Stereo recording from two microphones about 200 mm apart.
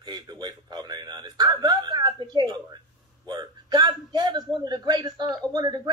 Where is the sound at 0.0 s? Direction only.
20° right (ahead or behind).